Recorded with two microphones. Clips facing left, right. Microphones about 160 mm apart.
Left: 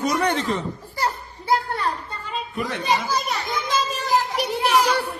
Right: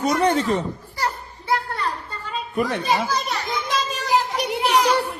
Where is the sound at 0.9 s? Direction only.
20° left (ahead or behind).